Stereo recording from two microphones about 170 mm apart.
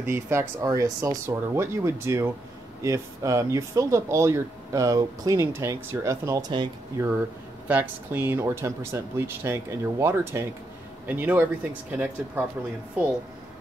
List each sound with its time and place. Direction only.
0.0 s speech: 15° right (ahead or behind)
6.5 s speech: 25° right (ahead or behind)
7.6 s speech: 10° right (ahead or behind)